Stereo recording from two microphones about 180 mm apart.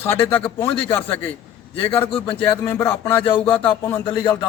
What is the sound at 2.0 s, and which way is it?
Speech, 30° left (ahead or behind).